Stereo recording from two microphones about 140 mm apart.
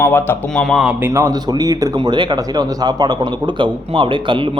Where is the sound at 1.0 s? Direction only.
20° right (ahead or behind).